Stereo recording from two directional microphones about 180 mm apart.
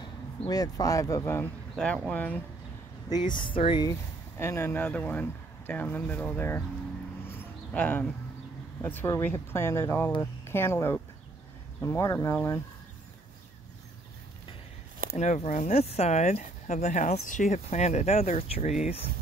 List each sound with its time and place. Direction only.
0.0 s speech: 20° left (ahead or behind)
3.3 s speech: 25° left (ahead or behind)
4.4 s speech: 15° left (ahead or behind)
7.2 s a sound: 10° left (ahead or behind)
8.8 s speech: 15° left (ahead or behind)
15.1 s speech: 40° left (ahead or behind)